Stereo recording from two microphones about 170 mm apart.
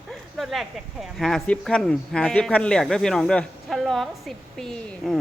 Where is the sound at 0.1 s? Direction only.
Centre (ahead or behind).